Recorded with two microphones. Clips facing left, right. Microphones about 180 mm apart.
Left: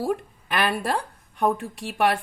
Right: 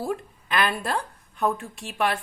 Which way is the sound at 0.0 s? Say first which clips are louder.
Left 3 dB; 60° left (ahead or behind).